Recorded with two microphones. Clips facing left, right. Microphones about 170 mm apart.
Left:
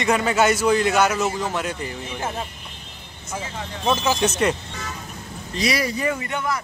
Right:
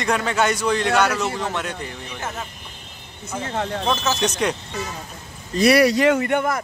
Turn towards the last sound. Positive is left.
turn(degrees=-55)  # may be behind; listen again after turning